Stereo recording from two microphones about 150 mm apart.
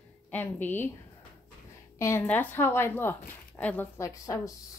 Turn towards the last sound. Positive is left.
turn(degrees=20)  # may be behind; listen again after turning